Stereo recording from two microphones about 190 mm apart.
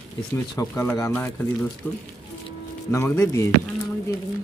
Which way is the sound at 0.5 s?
15° left (ahead or behind).